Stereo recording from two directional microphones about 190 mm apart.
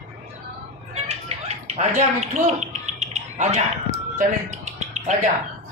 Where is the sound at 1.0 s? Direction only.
35° right (ahead or behind).